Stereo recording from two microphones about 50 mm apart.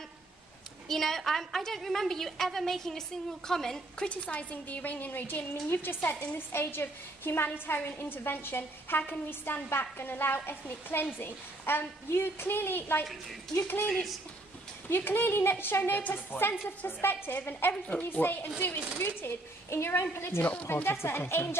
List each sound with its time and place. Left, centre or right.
0.8 s a woman's voice: centre
4.0 s a woman's voice: left
5.5 s a woman's voice: left
14.9 s a woman's voice: left
17.8 s a child's voice: left
18.2 s a woman's voice: left
18.9 s a woman's voice: left